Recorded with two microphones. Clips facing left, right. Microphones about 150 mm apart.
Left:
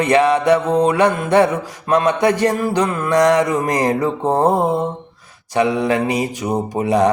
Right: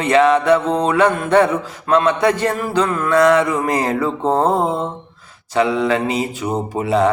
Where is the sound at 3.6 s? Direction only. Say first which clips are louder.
Even; 25° right (ahead or behind).